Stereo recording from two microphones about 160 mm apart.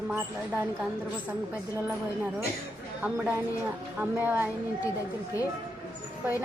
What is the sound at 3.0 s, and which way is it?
A woman's voice, 10° right (ahead or behind).